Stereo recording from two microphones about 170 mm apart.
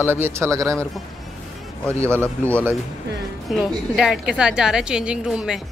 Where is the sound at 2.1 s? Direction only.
10° left (ahead or behind).